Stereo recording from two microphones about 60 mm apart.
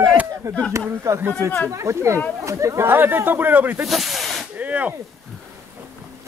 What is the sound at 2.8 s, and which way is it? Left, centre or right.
A man's voice, right.